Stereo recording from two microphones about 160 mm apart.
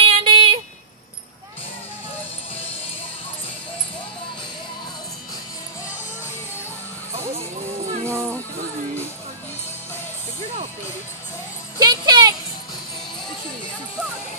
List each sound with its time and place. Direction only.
0.0 s a sound: 35° right (ahead or behind)
8.0 s music: 15° right (ahead or behind)
11.8 s music: 25° right (ahead or behind)